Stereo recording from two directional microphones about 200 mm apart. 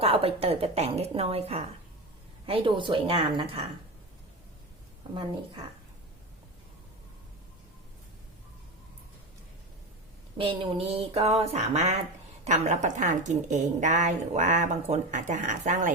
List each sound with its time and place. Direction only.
0.0 s a woman's voice: 30° right (ahead or behind)
10.3 s a woman's voice: 25° right (ahead or behind)